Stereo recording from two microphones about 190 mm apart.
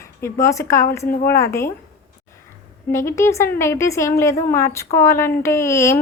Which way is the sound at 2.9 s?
15° left (ahead or behind).